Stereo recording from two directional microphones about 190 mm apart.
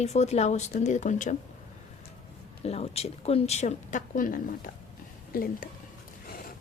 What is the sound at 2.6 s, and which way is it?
A woman's voice, 35° left (ahead or behind).